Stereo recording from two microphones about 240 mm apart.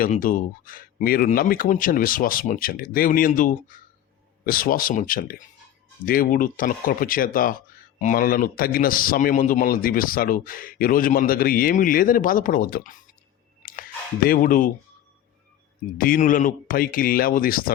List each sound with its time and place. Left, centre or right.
0.0 s speech: left
13.6 s a sound: left
14.3 s speech: left
16.0 s speech: left